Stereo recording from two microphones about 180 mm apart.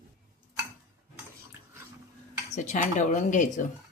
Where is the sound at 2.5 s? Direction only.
45° left (ahead or behind).